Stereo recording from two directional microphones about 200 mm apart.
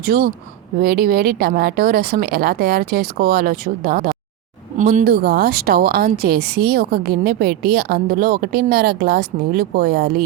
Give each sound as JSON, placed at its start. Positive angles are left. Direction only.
{"t": 0.0, "sound": "a woman's voice", "side_deg": -50}